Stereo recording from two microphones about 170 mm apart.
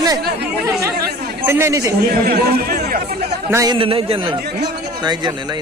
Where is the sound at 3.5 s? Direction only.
20° right (ahead or behind).